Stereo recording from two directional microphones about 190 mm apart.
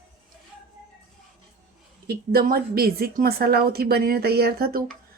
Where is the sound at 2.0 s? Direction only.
55° right (ahead or behind).